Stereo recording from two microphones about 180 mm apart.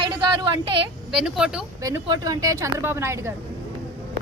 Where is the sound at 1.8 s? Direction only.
20° right (ahead or behind).